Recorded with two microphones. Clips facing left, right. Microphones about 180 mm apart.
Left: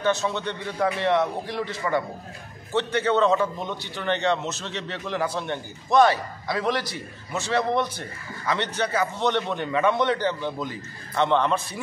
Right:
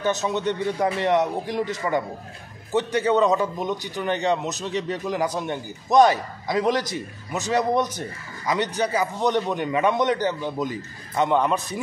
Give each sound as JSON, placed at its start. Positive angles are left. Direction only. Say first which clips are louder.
{"t": 0.0, "sound": "a man's voice", "louder": "right 1 dB", "side_deg": -15}
{"t": 2.7, "sound": "a man's voice", "louder": "right 2 dB", "side_deg": -15}